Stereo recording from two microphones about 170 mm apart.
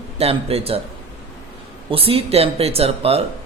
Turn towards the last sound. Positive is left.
turn(degrees=-35)  # may be behind; listen again after turning